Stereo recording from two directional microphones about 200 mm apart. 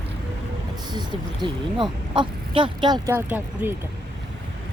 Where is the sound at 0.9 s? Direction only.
20° right (ahead or behind).